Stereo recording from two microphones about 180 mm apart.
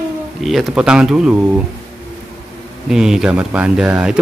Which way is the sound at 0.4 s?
Centre (ahead or behind).